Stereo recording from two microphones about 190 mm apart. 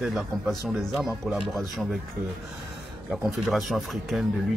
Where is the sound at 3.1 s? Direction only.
5° right (ahead or behind).